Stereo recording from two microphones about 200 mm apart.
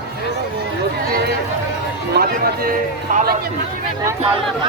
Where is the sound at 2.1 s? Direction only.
50° right (ahead or behind).